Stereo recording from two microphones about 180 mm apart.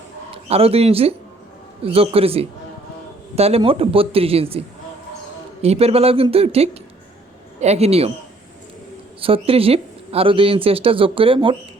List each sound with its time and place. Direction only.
0.4 s speech: 35° right (ahead or behind)
5.6 s speech: 35° right (ahead or behind)
9.2 s speech: 30° right (ahead or behind)